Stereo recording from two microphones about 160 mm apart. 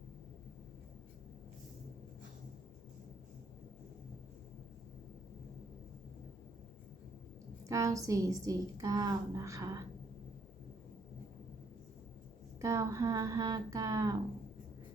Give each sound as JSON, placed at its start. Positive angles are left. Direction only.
{"t": 7.7, "sound": "a woman's voice", "side_deg": -20}
{"t": 12.6, "sound": "a woman's voice", "side_deg": -20}